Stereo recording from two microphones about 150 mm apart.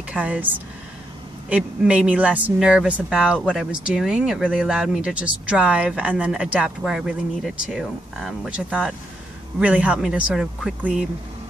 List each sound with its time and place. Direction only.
0.1 s speech: 10° right (ahead or behind)
3.3 s speech: 5° left (ahead or behind)
3.8 s speech: 5° right (ahead or behind)